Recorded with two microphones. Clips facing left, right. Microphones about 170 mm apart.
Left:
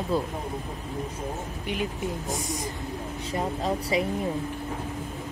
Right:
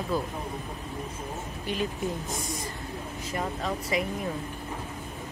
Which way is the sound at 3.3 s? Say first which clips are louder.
Left 3 dB; 30° left (ahead or behind).